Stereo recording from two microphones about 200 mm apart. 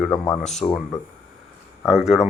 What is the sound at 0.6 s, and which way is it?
Speech, 20° left (ahead or behind).